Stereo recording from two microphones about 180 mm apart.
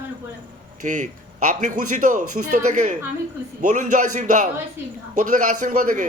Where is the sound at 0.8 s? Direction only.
45° right (ahead or behind).